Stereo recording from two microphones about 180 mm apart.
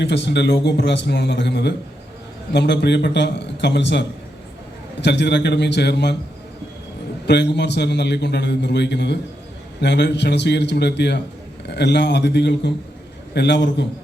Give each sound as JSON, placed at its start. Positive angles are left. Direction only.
{"t": 0.0, "sound": "a man's voice", "side_deg": 70}
{"t": 7.3, "sound": "a man's voice", "side_deg": 70}